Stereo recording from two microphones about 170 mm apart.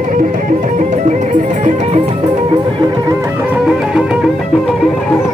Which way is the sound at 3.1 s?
15° right (ahead or behind).